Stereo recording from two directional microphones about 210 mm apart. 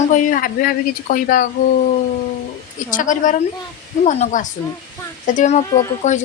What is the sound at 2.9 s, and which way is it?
Speech, 40° left (ahead or behind).